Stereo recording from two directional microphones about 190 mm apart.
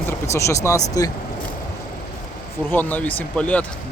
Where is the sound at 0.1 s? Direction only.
15° left (ahead or behind).